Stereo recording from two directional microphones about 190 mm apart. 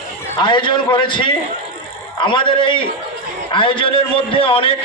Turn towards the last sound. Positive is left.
turn(degrees=30)  # may be behind; listen again after turning